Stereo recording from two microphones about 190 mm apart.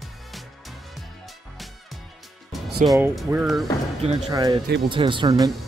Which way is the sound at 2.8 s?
35° right (ahead or behind).